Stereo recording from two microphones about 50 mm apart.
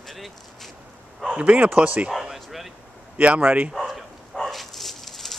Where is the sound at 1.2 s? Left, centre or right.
Right.